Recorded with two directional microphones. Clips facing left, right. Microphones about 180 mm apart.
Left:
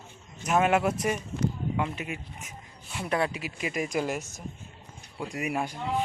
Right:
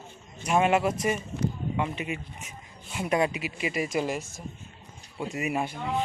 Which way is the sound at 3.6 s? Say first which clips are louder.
Right 1 dB; 5° right (ahead or behind).